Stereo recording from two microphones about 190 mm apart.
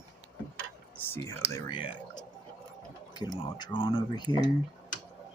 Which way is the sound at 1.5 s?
25° left (ahead or behind).